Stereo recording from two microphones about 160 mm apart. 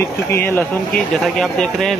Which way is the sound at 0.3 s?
10° left (ahead or behind).